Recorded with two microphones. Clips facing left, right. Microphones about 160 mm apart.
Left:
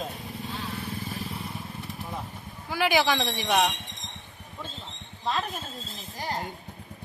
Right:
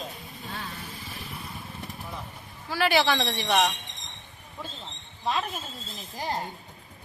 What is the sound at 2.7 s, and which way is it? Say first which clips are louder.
Speech: even; 15° left (ahead or behind).